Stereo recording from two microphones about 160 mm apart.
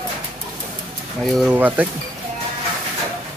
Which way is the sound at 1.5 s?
10° right (ahead or behind).